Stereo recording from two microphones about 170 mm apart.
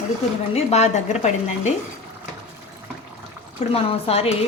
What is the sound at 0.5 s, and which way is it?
A woman's voice, 40° left (ahead or behind).